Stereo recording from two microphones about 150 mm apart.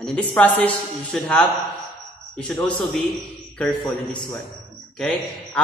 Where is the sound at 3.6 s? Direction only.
15° left (ahead or behind).